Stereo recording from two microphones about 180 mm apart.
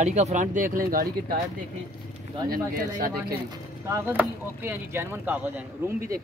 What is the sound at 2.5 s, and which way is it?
Speech, 55° right (ahead or behind).